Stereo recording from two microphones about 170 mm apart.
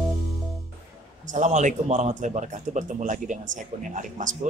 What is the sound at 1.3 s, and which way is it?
Speech, 45° right (ahead or behind).